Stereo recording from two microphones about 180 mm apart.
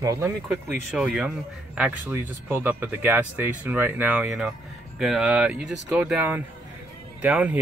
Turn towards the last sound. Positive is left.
turn(degrees=-10)  # may be behind; listen again after turning